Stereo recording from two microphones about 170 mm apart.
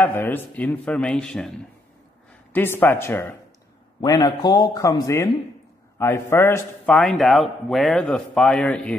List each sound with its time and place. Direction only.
0.0 s speech: 10° left (ahead or behind)
2.5 s speech: 10° left (ahead or behind)
4.0 s a man's voice: 25° left (ahead or behind)
7.0 s a man's voice: centre (ahead or behind)